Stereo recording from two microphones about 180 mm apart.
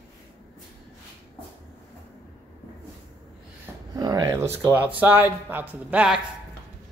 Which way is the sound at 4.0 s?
20° right (ahead or behind).